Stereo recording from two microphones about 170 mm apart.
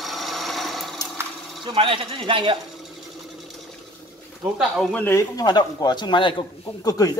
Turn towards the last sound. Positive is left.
turn(degrees=20)  # may be behind; listen again after turning